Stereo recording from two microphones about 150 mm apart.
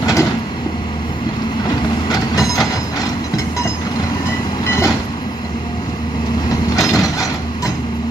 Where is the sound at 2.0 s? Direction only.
25° left (ahead or behind).